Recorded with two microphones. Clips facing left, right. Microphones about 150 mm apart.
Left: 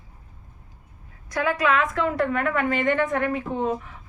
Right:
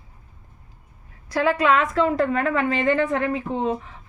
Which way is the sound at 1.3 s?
30° right (ahead or behind).